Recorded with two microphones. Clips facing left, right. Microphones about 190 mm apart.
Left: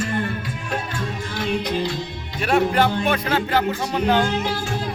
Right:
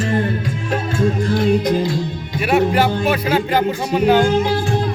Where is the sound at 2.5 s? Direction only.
5° right (ahead or behind).